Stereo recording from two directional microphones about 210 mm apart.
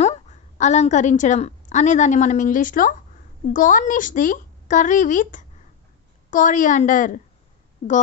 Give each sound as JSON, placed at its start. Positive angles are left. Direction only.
{"t": 0.6, "sound": "a woman's voice", "side_deg": 35}